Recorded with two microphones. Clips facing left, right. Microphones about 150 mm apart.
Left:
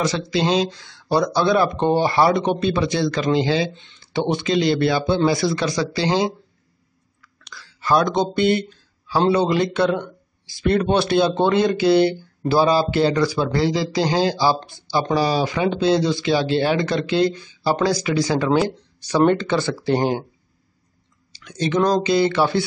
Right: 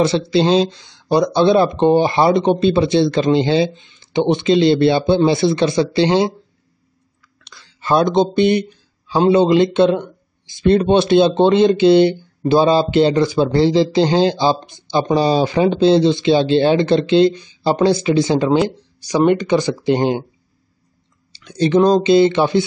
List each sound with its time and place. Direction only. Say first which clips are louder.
0.0 s speech: right 6 dB; 30° right (ahead or behind)
3.7 s speech: right 5 dB; 15° right (ahead or behind)
7.4 s a sound: right 2 dB; 25° right (ahead or behind)
8.4 s speech: right 4 dB; 20° right (ahead or behind)
21.3 s speech: right 7 dB; 30° right (ahead or behind)